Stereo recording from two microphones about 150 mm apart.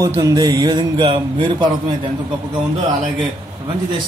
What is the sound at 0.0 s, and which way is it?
A man's voice, 25° right (ahead or behind).